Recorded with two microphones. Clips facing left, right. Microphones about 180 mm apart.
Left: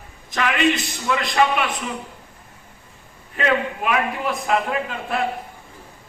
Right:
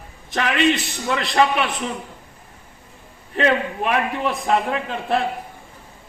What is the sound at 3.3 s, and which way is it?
A man's voice, 35° right (ahead or behind).